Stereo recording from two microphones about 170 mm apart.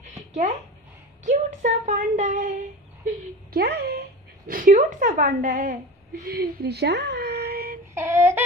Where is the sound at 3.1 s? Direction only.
70° right (ahead or behind); by 5.8 s 50° right (ahead or behind).